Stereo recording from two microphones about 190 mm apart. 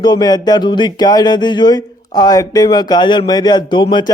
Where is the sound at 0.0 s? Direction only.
20° left (ahead or behind).